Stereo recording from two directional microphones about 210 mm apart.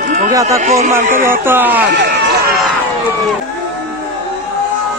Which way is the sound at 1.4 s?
10° right (ahead or behind).